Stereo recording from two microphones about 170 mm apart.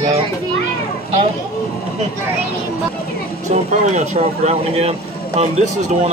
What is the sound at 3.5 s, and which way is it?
Speech, 45° right (ahead or behind).